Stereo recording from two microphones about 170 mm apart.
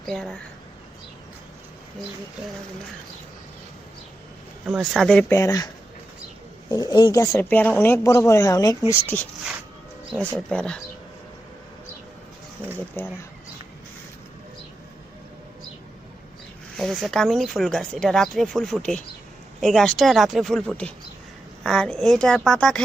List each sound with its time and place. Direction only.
0.0 s speech: centre (ahead or behind)
4.6 s speech: centre (ahead or behind)
5.3 s speech: 20° left (ahead or behind)
10.3 s speech: 5° left (ahead or behind)
13.0 s speech: 10° left (ahead or behind)
16.7 s speech: centre (ahead or behind)